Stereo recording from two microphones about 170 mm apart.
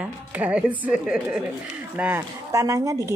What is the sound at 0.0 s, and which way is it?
A woman's voice, 10° right (ahead or behind).